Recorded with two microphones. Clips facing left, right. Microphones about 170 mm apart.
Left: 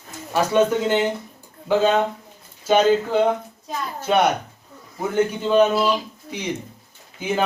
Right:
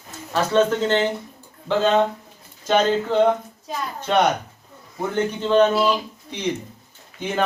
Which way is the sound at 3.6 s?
5° left (ahead or behind).